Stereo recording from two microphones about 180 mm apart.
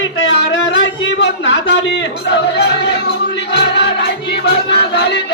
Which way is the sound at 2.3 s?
65° left (ahead or behind).